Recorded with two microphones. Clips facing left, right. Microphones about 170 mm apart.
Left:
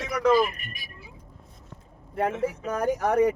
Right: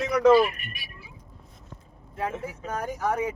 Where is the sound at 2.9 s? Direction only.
65° left (ahead or behind).